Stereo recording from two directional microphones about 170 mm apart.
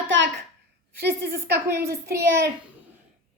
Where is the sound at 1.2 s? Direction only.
65° right (ahead or behind).